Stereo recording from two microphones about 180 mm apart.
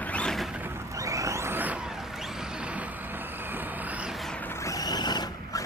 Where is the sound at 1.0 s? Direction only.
15° right (ahead or behind).